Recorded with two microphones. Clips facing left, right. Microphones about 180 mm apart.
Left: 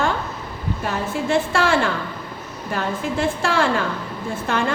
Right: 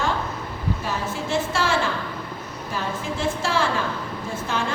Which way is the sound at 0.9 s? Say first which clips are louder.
Left 7 dB; 60° left (ahead or behind).